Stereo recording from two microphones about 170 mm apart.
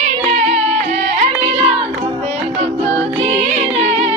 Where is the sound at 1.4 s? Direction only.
30° right (ahead or behind).